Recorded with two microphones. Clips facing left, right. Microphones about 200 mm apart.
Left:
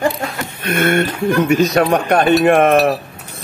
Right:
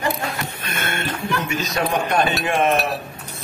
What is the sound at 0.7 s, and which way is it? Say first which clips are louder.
Speech: left 13 dB; 60° left (ahead or behind).